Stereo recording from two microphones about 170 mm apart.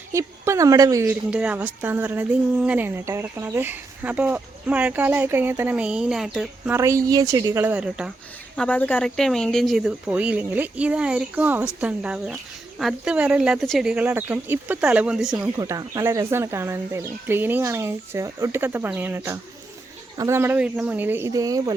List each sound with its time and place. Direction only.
0.1 s speech: 15° right (ahead or behind)
1.0 s speech: 5° right (ahead or behind)
6.7 s speech: 15° right (ahead or behind)
8.5 s speech: 10° left (ahead or behind)
15.5 s speech: 20° right (ahead or behind)